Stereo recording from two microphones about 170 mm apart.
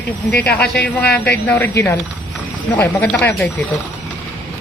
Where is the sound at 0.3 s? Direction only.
10° left (ahead or behind).